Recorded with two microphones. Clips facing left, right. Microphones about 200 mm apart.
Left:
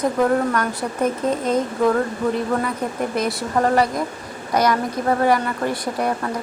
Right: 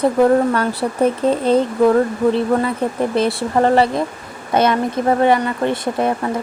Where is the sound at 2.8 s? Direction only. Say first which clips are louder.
Right 5 dB; 30° right (ahead or behind).